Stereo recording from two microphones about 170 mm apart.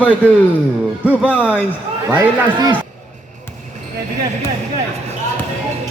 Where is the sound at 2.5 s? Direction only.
25° right (ahead or behind).